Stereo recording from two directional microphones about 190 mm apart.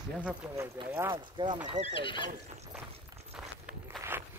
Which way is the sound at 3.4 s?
5° right (ahead or behind).